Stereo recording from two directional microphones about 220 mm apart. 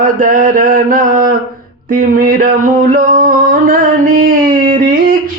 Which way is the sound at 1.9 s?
40° right (ahead or behind).